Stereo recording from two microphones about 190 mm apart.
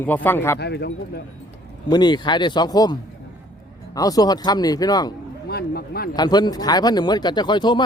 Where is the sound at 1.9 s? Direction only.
20° left (ahead or behind).